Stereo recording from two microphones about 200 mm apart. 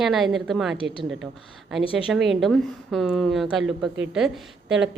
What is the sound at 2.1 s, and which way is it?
A woman's voice, centre (ahead or behind).